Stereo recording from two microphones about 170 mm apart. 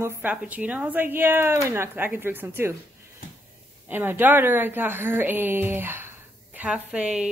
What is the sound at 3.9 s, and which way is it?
A woman's voice, 10° right (ahead or behind).